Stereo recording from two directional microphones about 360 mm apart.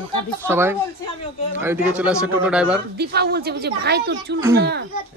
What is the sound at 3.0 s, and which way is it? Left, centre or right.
Speech, right.